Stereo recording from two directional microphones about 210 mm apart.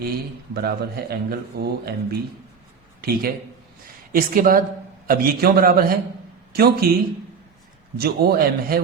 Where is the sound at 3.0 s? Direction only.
45° right (ahead or behind).